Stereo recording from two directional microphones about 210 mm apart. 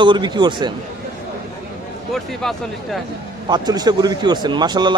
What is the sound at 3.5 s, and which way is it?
A man's voice, 20° right (ahead or behind).